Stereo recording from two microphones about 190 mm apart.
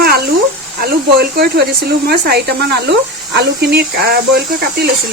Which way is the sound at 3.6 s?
60° right (ahead or behind).